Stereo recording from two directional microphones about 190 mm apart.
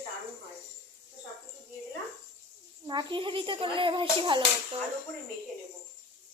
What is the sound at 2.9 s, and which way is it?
Speech, 25° right (ahead or behind).